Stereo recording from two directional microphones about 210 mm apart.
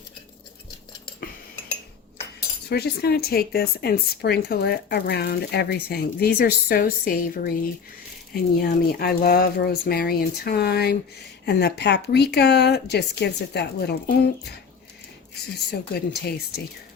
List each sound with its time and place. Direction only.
2.6 s speech: 50° left (ahead or behind)